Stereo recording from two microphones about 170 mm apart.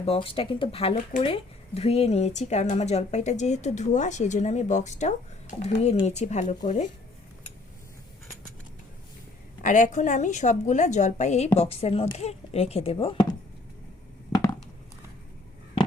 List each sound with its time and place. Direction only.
0.0 s speech: 35° left (ahead or behind)
9.6 s speech: 45° left (ahead or behind); by 13.3 s 30° left (ahead or behind)